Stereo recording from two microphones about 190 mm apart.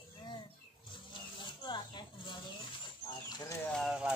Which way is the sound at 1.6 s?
25° left (ahead or behind).